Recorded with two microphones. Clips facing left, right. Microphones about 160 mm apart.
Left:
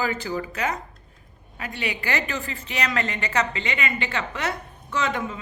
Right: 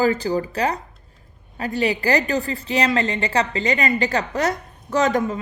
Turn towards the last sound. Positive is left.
turn(degrees=-40)  # may be behind; listen again after turning